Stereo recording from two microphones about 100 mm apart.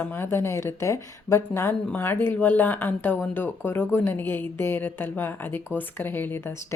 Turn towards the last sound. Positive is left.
turn(degrees=20)  # may be behind; listen again after turning